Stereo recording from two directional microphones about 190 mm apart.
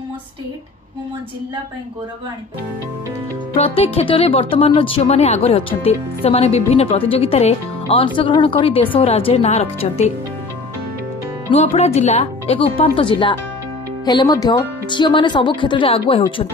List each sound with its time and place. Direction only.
3.5 s speech: 30° left (ahead or behind)
11.5 s speech: 35° left (ahead or behind)